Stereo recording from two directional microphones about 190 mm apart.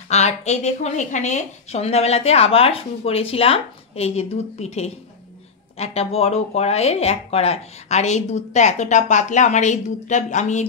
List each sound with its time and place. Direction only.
0.1 s speech: 35° left (ahead or behind)